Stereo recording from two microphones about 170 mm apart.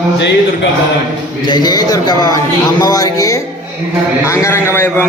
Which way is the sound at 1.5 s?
25° left (ahead or behind).